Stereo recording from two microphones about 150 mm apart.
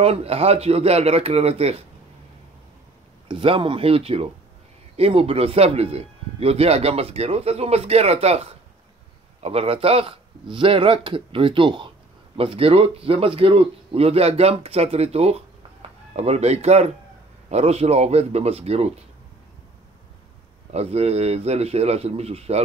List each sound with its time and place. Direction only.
0.0 s a man's voice: 40° right (ahead or behind)
3.3 s a man's voice: 35° right (ahead or behind)
20.7 s a man's voice: 45° right (ahead or behind)